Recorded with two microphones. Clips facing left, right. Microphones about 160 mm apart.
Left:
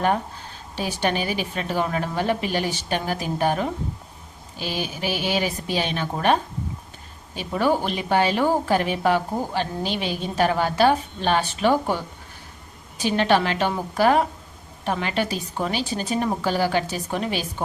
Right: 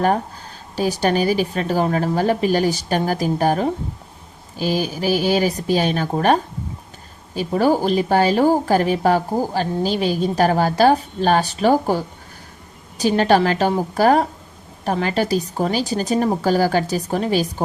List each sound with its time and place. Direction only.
0.8 s a woman's voice: 40° right (ahead or behind)